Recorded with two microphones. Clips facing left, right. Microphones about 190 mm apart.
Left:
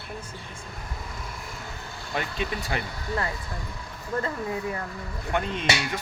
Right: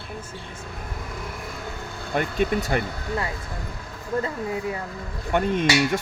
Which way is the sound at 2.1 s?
50° right (ahead or behind).